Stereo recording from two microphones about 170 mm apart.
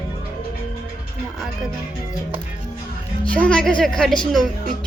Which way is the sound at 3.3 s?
5° left (ahead or behind).